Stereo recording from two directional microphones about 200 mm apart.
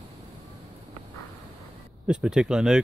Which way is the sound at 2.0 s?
5° right (ahead or behind).